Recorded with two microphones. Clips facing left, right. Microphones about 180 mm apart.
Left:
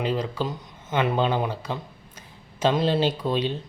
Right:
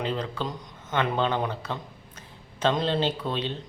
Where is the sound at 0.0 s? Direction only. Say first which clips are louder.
Left 3 dB; 10° left (ahead or behind).